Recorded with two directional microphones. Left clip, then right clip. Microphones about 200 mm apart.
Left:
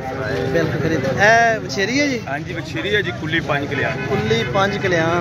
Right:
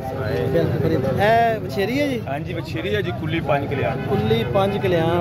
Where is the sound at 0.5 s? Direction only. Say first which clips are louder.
Left 1 dB; 5° right (ahead or behind).